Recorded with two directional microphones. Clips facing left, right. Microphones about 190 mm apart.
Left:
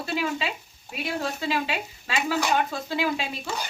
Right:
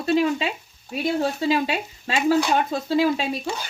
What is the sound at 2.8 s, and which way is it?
Speech, 40° right (ahead or behind).